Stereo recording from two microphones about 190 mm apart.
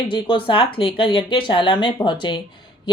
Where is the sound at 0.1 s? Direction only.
25° left (ahead or behind).